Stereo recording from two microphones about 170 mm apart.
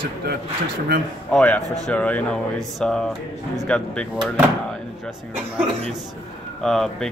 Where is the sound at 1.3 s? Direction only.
5° left (ahead or behind).